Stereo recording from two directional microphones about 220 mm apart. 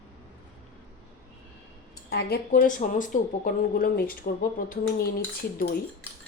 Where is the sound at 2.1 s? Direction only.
45° left (ahead or behind).